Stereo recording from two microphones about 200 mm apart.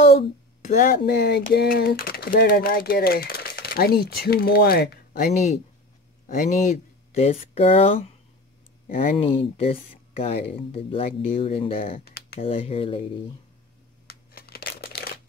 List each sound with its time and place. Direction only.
0.0 s speech: 30° left (ahead or behind)
9.2 s speech: 30° left (ahead or behind)
14.0 s a sound: 50° left (ahead or behind)